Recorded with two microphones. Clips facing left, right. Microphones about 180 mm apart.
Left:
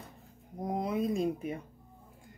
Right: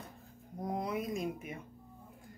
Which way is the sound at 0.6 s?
20° left (ahead or behind).